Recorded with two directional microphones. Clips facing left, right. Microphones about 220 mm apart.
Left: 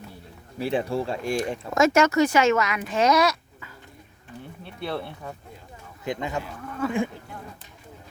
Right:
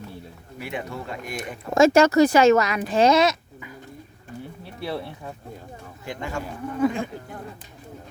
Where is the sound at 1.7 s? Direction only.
30° right (ahead or behind).